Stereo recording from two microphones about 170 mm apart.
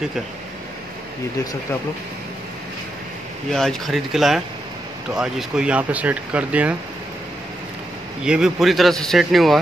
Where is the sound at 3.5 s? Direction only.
Centre (ahead or behind).